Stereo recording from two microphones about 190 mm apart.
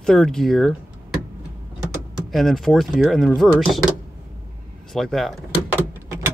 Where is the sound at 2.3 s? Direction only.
Centre (ahead or behind).